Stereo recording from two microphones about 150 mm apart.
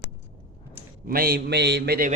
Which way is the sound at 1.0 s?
85° right.